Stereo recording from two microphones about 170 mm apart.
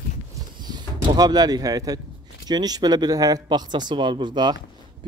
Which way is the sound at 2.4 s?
25° right (ahead or behind).